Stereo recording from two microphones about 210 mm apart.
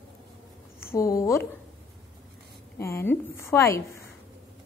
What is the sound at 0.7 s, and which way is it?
Speech, 15° left (ahead or behind).